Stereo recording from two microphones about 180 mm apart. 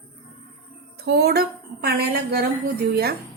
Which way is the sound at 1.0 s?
65° right (ahead or behind).